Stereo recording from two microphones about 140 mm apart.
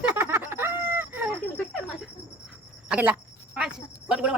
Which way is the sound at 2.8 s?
10° right (ahead or behind).